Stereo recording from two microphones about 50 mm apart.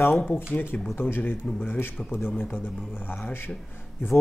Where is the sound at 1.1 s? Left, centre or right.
Left.